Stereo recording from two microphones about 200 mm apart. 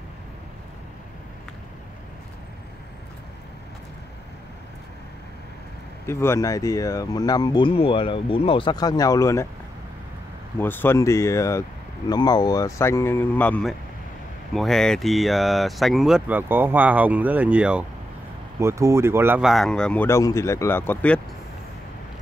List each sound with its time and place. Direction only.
6.0 s speech: 10° left (ahead or behind)
10.6 s speech: 10° left (ahead or behind)